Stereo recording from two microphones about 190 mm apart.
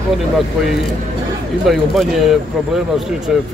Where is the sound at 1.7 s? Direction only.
Centre (ahead or behind).